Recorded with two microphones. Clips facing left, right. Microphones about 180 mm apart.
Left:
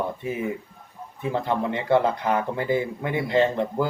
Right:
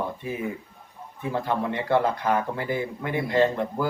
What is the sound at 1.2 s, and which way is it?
Speech, 20° left (ahead or behind).